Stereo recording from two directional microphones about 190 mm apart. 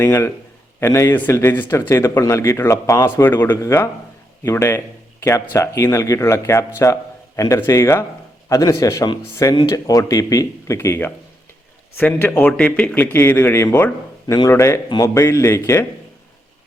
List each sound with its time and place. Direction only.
0.0 s speech: 15° left (ahead or behind)